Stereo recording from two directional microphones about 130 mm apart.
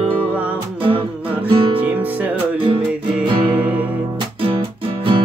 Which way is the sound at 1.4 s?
45° right (ahead or behind).